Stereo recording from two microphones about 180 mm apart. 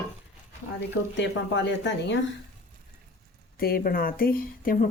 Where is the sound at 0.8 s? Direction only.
75° left (ahead or behind).